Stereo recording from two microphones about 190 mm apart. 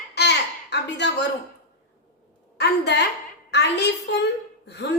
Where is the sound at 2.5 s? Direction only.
60° left (ahead or behind).